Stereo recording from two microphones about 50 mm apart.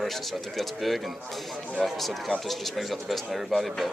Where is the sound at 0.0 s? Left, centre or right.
Centre.